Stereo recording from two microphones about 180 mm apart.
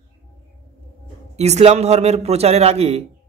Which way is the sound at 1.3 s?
35° right (ahead or behind).